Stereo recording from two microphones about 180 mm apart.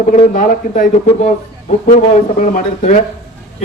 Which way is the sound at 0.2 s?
45° left (ahead or behind).